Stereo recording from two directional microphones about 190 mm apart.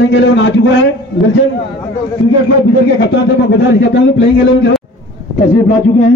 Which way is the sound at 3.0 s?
70° left (ahead or behind).